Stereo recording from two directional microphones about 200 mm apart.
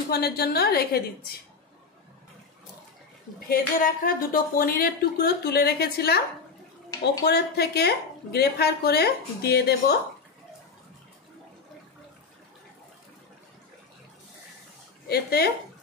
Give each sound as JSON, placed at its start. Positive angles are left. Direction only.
{"t": 0.1, "sound": "a woman's voice", "side_deg": 50}
{"t": 3.3, "sound": "a woman's voice", "side_deg": 45}
{"t": 7.2, "sound": "a woman's voice", "side_deg": 55}
{"t": 15.0, "sound": "a woman's voice", "side_deg": 50}